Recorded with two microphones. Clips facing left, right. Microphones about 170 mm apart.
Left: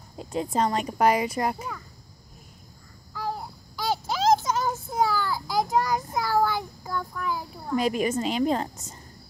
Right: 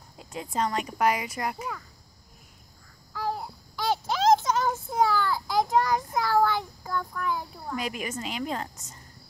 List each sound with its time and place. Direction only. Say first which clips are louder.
0.2 s speech: left 4 dB; 30° left (ahead or behind)
3.2 s child singing: right 1 dB; centre (ahead or behind)
7.7 s a woman's voice: left 9 dB; 30° left (ahead or behind)